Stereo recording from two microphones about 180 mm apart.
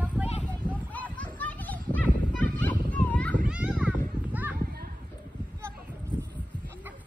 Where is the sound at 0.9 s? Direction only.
10° left (ahead or behind).